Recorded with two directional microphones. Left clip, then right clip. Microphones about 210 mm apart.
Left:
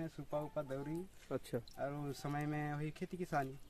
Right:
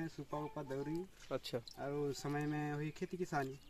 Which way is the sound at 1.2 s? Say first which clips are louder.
Even; 40° left (ahead or behind).